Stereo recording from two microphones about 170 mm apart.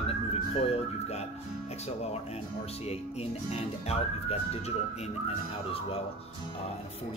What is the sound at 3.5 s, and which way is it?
Speech, 40° left (ahead or behind).